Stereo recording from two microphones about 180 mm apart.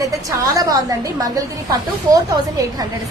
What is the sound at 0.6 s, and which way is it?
A woman's voice, 20° right (ahead or behind).